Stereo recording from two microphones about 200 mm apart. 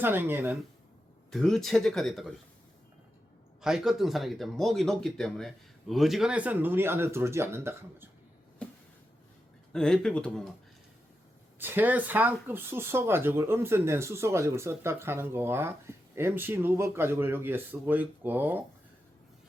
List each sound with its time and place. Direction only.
0.0 s speech: 10° right (ahead or behind)
1.3 s speech: centre (ahead or behind)
3.6 s speech: centre (ahead or behind)
8.6 s a sound: 5° left (ahead or behind)
9.7 s speech: 5° left (ahead or behind)
11.6 s speech: 10° right (ahead or behind)